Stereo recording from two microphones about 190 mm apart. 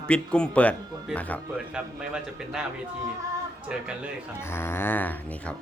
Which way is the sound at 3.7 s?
5° right (ahead or behind).